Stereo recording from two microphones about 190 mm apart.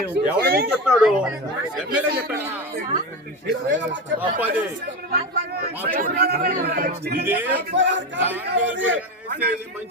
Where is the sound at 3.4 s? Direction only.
70° right (ahead or behind).